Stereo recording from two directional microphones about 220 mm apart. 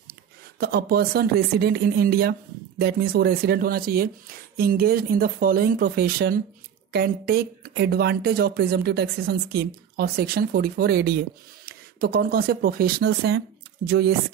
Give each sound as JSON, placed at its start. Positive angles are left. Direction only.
{"t": 0.1, "sound": "speech", "side_deg": -45}